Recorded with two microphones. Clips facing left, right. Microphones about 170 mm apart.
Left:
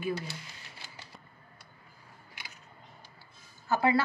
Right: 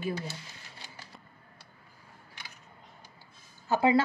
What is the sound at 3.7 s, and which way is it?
Speech, 20° right (ahead or behind).